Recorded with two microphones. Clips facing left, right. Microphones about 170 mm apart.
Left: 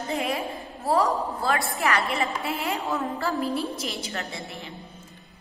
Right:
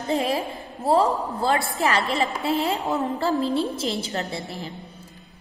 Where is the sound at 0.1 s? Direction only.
35° right (ahead or behind).